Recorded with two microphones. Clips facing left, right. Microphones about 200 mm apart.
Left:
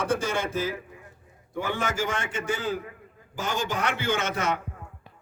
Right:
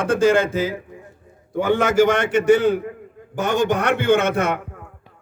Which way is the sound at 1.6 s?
75° right (ahead or behind).